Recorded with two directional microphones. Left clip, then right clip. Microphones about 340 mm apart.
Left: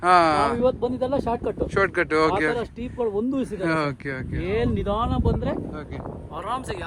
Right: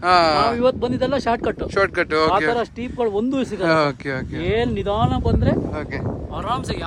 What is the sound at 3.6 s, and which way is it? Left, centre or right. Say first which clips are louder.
Speech: right 8 dB; centre.